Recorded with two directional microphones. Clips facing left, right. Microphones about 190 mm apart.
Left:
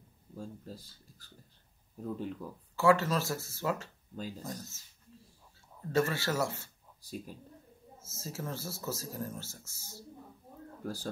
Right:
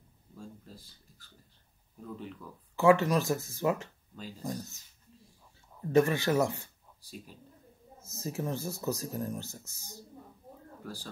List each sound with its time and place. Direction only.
0.4 s speech: 40° left (ahead or behind)
2.7 s speech: 20° right (ahead or behind)
7.0 s speech: 45° left (ahead or behind)
8.0 s speech: 15° right (ahead or behind)
10.8 s speech: 45° left (ahead or behind)